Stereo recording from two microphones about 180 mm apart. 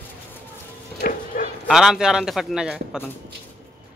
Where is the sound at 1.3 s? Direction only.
45° left (ahead or behind).